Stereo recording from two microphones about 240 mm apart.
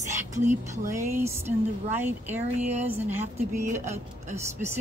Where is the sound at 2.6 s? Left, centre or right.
Right.